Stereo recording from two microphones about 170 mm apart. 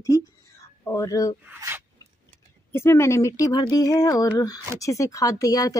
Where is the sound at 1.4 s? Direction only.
15° right (ahead or behind).